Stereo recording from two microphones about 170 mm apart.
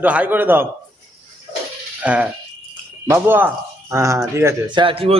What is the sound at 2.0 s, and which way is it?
A man's voice, 10° right (ahead or behind).